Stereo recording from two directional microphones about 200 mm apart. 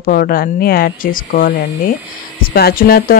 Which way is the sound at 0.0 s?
45° left (ahead or behind).